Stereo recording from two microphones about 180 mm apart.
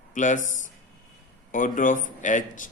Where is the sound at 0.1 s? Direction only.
45° left (ahead or behind).